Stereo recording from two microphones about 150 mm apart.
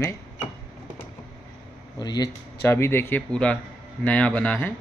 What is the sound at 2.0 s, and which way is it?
Speech, 25° left (ahead or behind).